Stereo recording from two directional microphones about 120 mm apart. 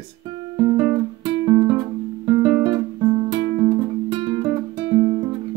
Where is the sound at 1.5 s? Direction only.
45° right (ahead or behind).